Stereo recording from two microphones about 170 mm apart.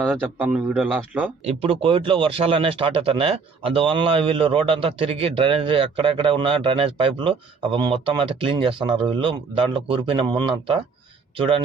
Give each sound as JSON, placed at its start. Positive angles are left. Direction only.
{"t": 0.0, "sound": "speech", "side_deg": -5}
{"t": 1.5, "sound": "speech", "side_deg": -35}